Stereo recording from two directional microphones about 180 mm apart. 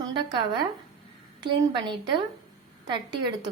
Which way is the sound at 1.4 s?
25° right (ahead or behind).